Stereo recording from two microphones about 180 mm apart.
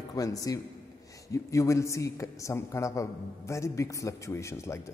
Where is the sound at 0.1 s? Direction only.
20° left (ahead or behind).